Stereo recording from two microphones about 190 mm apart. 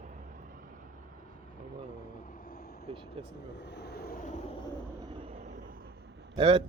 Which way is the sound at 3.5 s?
65° left (ahead or behind).